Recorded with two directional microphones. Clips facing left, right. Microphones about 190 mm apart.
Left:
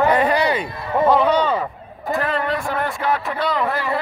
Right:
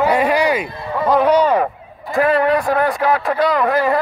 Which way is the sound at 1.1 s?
10° right (ahead or behind).